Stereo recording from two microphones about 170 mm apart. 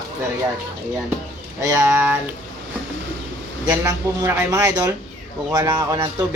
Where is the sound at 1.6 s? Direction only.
15° right (ahead or behind).